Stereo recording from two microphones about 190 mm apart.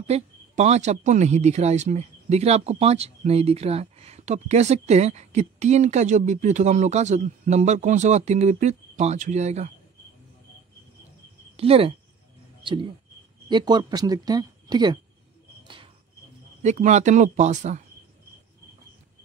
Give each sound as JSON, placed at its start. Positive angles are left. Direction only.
{"t": 0.1, "sound": "speech", "side_deg": -35}
{"t": 11.5, "sound": "speech", "side_deg": -30}
{"t": 15.6, "sound": "cricket", "side_deg": -25}
{"t": 16.6, "sound": "speech", "side_deg": -40}